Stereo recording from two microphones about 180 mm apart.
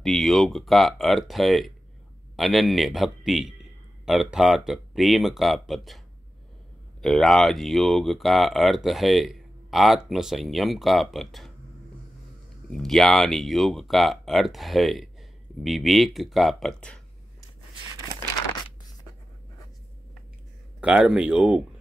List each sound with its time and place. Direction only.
0.0 s speech: centre (ahead or behind)
12.6 s speech: centre (ahead or behind)
20.8 s speech: 5° right (ahead or behind)